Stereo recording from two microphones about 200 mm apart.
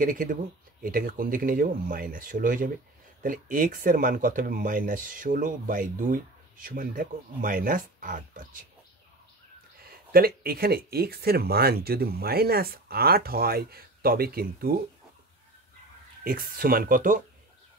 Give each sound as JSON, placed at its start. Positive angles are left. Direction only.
{"t": 0.0, "sound": "speech", "side_deg": -45}
{"t": 10.1, "sound": "speech", "side_deg": -50}
{"t": 16.3, "sound": "speech", "side_deg": -45}